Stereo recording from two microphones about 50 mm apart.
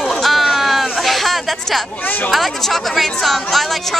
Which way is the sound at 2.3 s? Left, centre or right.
Centre.